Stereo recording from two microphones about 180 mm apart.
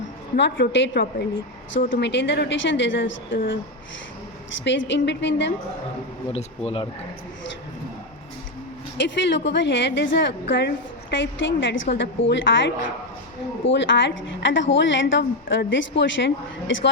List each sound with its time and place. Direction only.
0.3 s a woman's voice: 75° left (ahead or behind); by 3.3 s 90° left
4.6 s a woman's voice: 90° left
6.3 s speech: 35° left (ahead or behind)
9.0 s a woman's voice: 80° left